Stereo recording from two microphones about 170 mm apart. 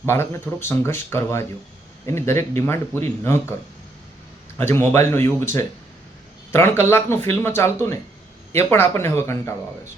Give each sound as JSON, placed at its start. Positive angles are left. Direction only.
{"t": 0.0, "sound": "speech", "side_deg": 15}
{"t": 4.5, "sound": "speech", "side_deg": 15}